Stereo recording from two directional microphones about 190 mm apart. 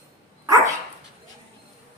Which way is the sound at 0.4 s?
15° right (ahead or behind).